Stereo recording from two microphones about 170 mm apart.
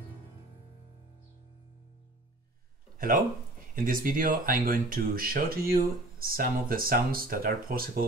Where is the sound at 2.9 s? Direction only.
55° right (ahead or behind).